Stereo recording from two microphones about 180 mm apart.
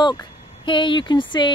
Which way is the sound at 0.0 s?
25° left (ahead or behind).